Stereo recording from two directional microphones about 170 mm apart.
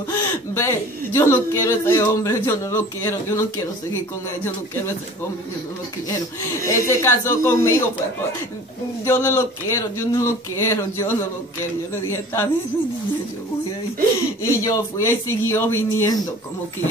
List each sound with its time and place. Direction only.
0.1 s speech: 15° left (ahead or behind)
6.6 s speech: 15° left (ahead or behind)
9.0 s speech: 15° left (ahead or behind)
14.6 s speech: 15° left (ahead or behind)